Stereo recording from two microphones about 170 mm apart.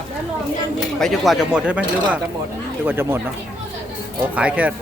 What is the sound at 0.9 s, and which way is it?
Speech, centre (ahead or behind).